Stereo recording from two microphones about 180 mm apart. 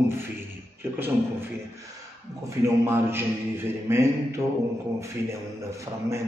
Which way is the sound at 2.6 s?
15° right (ahead or behind).